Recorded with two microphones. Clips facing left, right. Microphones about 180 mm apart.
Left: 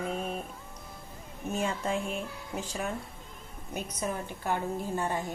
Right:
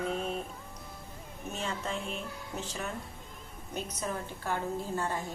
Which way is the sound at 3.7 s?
15° left (ahead or behind).